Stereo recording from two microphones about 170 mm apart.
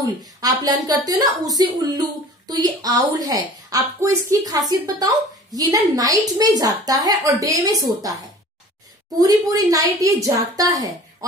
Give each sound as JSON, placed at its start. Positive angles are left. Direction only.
{"t": 0.0, "sound": "a woman's voice", "side_deg": -20}
{"t": 9.1, "sound": "a woman's voice", "side_deg": -20}